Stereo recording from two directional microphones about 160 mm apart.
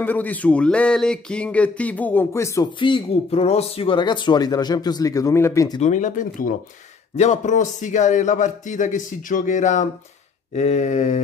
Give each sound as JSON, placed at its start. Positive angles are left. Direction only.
{"t": 0.0, "sound": "speech", "side_deg": 10}
{"t": 2.8, "sound": "speech", "side_deg": 35}
{"t": 5.8, "sound": "a man's voice", "side_deg": 50}